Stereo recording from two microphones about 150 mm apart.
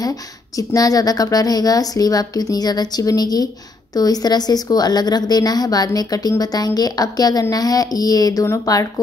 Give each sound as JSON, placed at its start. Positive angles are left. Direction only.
{"t": 0.0, "sound": "a woman's voice", "side_deg": 25}